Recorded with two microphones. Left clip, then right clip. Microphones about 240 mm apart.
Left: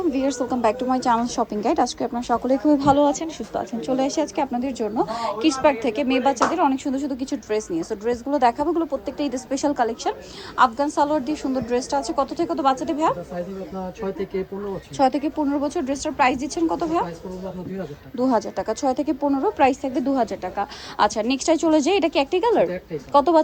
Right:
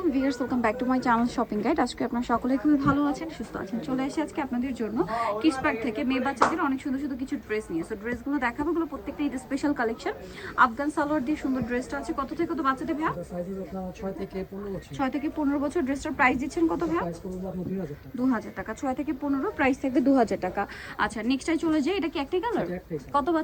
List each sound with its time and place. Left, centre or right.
0.1 s a woman's voice: centre
9.5 s a woman's voice: centre
14.9 s a woman's voice: centre
18.2 s a woman's voice: centre
21.0 s a woman's voice: centre